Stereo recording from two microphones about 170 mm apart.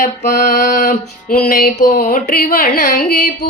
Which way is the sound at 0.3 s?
50° left (ahead or behind).